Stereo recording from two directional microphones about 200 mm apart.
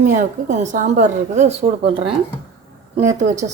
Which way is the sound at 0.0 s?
35° right (ahead or behind).